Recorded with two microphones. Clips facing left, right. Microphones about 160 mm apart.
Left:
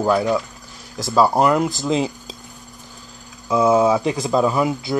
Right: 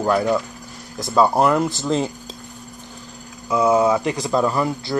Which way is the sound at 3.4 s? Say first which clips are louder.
Left 1 dB; 5° left (ahead or behind).